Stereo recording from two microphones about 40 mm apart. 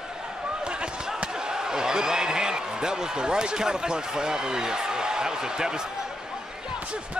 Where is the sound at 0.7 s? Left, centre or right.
Right.